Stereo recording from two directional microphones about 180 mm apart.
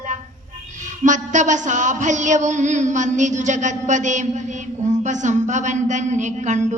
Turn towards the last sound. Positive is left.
turn(degrees=-40)  # may be behind; listen again after turning